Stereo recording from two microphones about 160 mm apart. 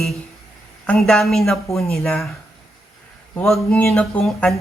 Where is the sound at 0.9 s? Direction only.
5° left (ahead or behind).